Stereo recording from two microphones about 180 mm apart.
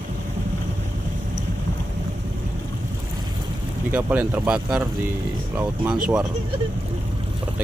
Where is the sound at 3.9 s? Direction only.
10° right (ahead or behind).